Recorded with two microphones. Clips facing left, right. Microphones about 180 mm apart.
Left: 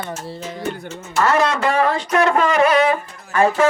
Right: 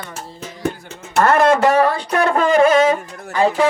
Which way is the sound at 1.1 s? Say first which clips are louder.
Right 4 dB; 55° right (ahead or behind).